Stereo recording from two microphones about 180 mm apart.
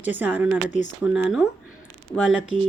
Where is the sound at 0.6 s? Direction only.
45° left (ahead or behind).